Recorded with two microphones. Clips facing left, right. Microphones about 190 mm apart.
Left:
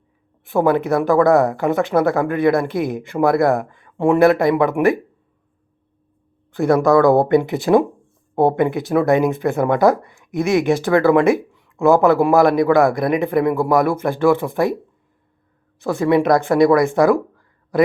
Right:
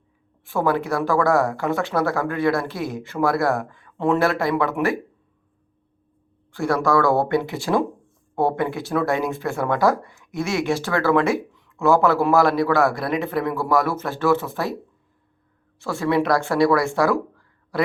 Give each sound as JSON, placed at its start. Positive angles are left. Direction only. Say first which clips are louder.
{"t": 0.4, "sound": "speech", "louder": "left 5 dB", "side_deg": 20}
{"t": 6.5, "sound": "speech", "louder": "left 6 dB", "side_deg": 20}
{"t": 15.8, "sound": "speech", "louder": "left 5 dB", "side_deg": 20}